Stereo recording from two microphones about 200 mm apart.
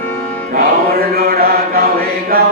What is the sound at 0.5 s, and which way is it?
Choir, 50° right (ahead or behind).